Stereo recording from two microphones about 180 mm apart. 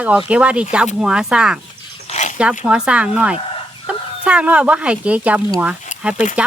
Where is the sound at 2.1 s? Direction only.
40° left (ahead or behind).